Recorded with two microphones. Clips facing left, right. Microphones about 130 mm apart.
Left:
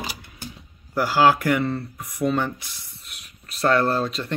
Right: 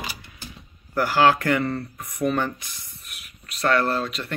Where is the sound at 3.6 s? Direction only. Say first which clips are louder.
Left 2 dB; 30° left (ahead or behind).